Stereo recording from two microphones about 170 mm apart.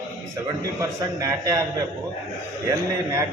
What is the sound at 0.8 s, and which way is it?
A man's voice, 20° right (ahead or behind).